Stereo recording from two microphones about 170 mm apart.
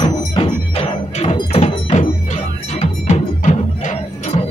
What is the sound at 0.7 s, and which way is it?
Music, 35° left (ahead or behind).